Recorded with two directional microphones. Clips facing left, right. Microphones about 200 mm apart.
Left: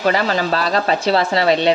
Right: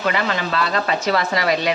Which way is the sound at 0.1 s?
35° left (ahead or behind).